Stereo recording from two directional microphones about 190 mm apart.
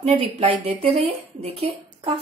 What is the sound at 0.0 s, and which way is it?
A woman's voice, 30° right (ahead or behind).